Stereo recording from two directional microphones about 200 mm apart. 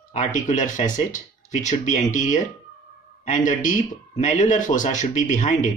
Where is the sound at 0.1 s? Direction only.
40° left (ahead or behind).